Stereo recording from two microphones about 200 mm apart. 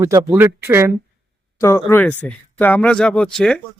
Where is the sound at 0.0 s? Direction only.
15° right (ahead or behind).